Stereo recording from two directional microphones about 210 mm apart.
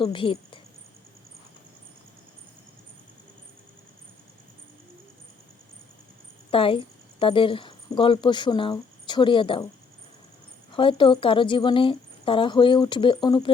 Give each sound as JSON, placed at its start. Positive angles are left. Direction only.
{"t": 0.0, "sound": "a woman's voice", "side_deg": 25}
{"t": 6.5, "sound": "speech", "side_deg": 25}
{"t": 10.8, "sound": "a woman's voice", "side_deg": 25}